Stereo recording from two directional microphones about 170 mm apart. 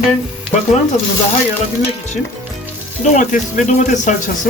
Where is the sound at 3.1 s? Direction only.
50° left (ahead or behind).